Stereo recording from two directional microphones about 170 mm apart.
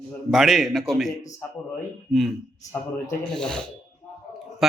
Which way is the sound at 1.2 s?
10° left (ahead or behind).